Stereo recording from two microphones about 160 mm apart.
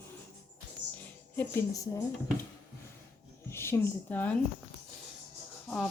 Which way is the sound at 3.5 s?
15° left (ahead or behind).